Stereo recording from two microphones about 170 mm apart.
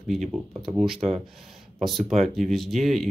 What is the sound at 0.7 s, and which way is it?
Speech, centre (ahead or behind).